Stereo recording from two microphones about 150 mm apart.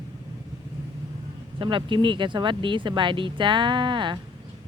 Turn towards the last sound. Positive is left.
turn(degrees=-30)  # may be behind; listen again after turning